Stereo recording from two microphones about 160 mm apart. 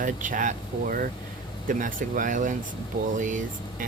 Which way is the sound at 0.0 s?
55° right (ahead or behind).